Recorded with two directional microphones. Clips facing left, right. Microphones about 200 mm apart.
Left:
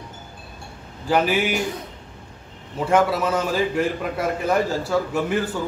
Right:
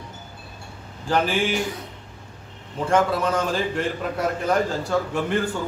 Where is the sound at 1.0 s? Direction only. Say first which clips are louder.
Left 2 dB; 5° left (ahead or behind).